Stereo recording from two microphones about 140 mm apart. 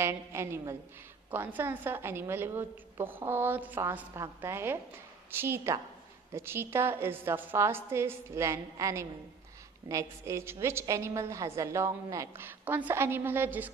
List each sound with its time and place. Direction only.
0.0 s a woman's voice: 20° right (ahead or behind)